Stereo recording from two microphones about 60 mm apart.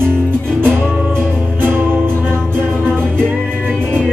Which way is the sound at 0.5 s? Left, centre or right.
Right.